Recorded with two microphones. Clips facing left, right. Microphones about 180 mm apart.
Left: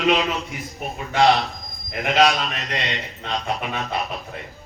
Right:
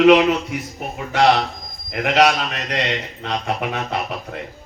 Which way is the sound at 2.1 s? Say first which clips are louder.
Right 2 dB; 70° right (ahead or behind).